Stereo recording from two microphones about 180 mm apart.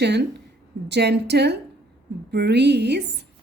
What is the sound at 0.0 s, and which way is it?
A woman's voice, 70° right (ahead or behind).